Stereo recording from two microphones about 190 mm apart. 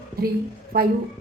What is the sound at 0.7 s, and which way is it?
Speech, 50° right (ahead or behind).